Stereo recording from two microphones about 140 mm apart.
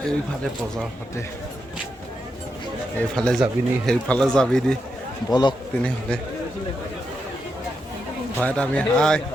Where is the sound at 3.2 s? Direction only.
5° left (ahead or behind).